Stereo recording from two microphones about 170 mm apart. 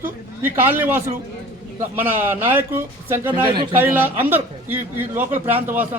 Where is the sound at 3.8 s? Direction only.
10° right (ahead or behind).